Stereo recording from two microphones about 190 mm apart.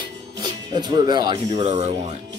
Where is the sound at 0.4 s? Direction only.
20° right (ahead or behind).